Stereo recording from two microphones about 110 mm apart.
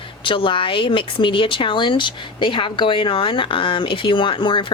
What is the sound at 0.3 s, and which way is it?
Speech, 50° left (ahead or behind).